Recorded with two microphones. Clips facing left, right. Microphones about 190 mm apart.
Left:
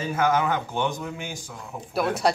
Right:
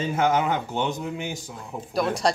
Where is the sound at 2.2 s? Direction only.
5° left (ahead or behind).